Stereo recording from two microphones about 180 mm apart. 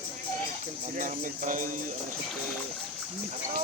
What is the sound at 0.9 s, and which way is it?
Music, 45° right (ahead or behind).